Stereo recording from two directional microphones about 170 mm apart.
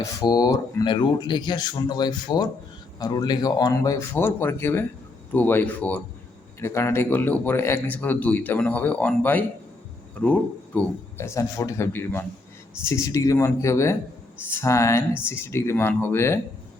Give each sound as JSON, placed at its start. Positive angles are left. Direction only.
{"t": 0.0, "sound": "speech", "side_deg": 20}